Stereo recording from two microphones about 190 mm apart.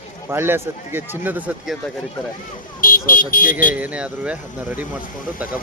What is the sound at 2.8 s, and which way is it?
Speech, 45° left (ahead or behind).